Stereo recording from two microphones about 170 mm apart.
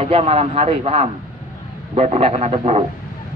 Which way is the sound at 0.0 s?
35° right (ahead or behind).